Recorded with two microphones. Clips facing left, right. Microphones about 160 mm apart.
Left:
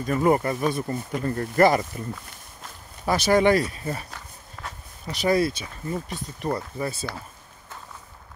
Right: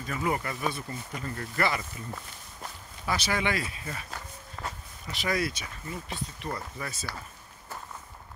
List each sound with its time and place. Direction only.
0.0 s speech: 45° left (ahead or behind)
3.1 s speech: 40° left (ahead or behind)
4.6 s walk: centre (ahead or behind)
5.1 s speech: 35° left (ahead or behind)
6.0 s speech: 45° left (ahead or behind)
6.8 s speech: 30° left (ahead or behind)